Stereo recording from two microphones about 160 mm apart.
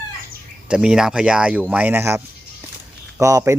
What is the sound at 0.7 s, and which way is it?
Speech, 5° right (ahead or behind).